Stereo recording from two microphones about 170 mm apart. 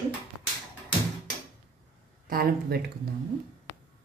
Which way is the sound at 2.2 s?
60° right (ahead or behind).